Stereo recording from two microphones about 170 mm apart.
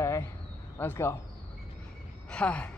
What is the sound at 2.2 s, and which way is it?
Speech, 5° left (ahead or behind).